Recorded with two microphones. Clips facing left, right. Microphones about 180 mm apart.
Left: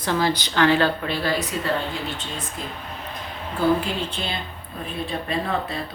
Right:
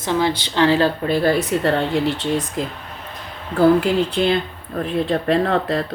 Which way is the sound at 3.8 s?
70° right (ahead or behind).